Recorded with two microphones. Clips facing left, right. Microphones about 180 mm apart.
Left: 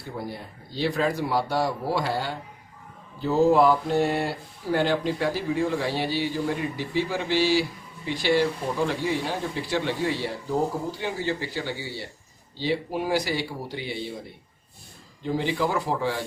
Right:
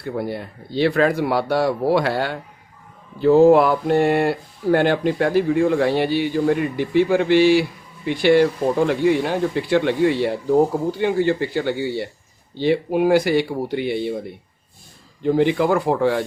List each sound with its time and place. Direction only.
0.0 s speech: 65° right (ahead or behind)
15.2 s speech: 60° right (ahead or behind)